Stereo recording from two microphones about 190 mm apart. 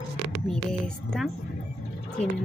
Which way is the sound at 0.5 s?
Centre (ahead or behind).